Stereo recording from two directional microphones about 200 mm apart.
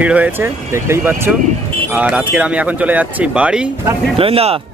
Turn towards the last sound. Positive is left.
turn(degrees=-30)  # may be behind; listen again after turning